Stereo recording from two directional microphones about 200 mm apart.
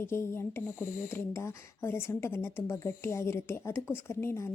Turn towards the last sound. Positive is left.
turn(degrees=15)  # may be behind; listen again after turning